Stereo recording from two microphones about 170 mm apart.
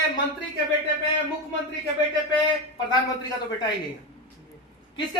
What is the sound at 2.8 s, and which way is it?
Speech, 25° left (ahead or behind).